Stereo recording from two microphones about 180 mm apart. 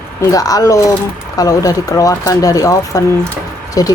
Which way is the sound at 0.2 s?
20° left (ahead or behind).